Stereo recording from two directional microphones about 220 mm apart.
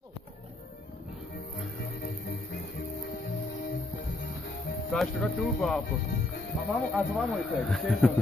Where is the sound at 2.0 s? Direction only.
45° left (ahead or behind).